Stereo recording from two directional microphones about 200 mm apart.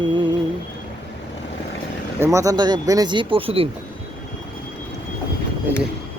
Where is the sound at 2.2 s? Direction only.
15° right (ahead or behind).